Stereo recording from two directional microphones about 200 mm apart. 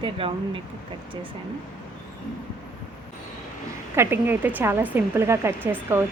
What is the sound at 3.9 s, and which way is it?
Speech, 10° right (ahead or behind).